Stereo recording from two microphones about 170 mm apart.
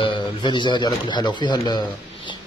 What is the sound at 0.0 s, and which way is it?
A man's voice, 25° left (ahead or behind).